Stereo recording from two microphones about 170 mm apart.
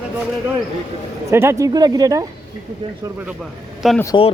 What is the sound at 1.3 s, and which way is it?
Speech, 15° right (ahead or behind).